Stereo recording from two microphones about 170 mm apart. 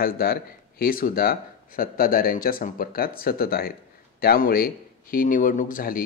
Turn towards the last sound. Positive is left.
turn(degrees=55)  # may be behind; listen again after turning